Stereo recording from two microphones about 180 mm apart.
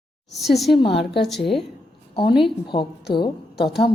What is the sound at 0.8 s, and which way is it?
Speech, 30° left (ahead or behind).